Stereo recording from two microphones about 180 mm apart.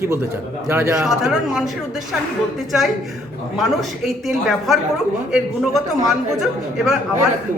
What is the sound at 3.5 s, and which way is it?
A man's voice, centre (ahead or behind).